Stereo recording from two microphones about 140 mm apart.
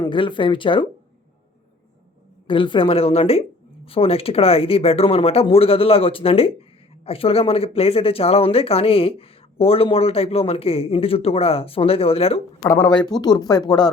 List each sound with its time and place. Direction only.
0.0 s a woman's voice: 35° left (ahead or behind)
2.5 s a woman's voice: 35° left (ahead or behind)
12.9 s speech: 30° left (ahead or behind)